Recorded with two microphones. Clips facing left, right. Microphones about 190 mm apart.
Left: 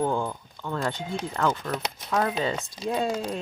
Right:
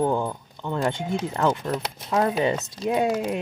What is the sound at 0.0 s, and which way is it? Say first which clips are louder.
Speech: right 3 dB; 15° right (ahead or behind).